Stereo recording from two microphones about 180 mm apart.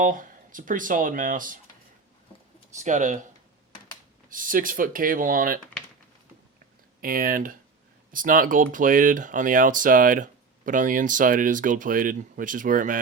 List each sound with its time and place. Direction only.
0.0 s speech: 50° right (ahead or behind)
2.7 s speech: 45° right (ahead or behind)
4.3 s speech: 50° right (ahead or behind)
7.0 s speech: 50° right (ahead or behind)